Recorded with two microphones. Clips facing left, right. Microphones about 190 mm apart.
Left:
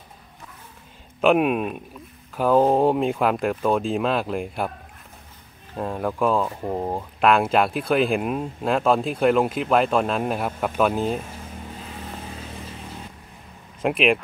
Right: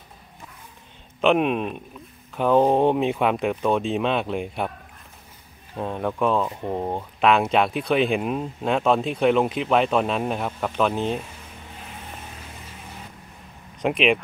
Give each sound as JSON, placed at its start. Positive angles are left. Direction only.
{"t": 1.2, "sound": "speech", "side_deg": 5}
{"t": 5.8, "sound": "speech", "side_deg": 0}
{"t": 13.7, "sound": "speech", "side_deg": 0}